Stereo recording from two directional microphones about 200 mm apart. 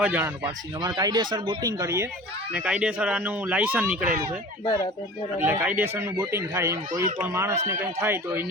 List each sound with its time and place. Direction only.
0.0 s speech: 10° right (ahead or behind)
0.4 s speech: 20° right (ahead or behind)
4.6 s speech: 15° left (ahead or behind)
5.4 s speech: 10° right (ahead or behind)